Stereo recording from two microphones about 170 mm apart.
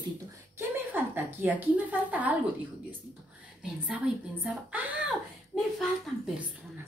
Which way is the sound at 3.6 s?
5° right (ahead or behind).